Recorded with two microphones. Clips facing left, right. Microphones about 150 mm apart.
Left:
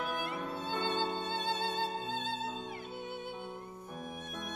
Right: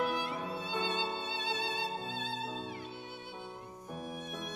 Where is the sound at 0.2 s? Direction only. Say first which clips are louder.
Even; 50° left (ahead or behind).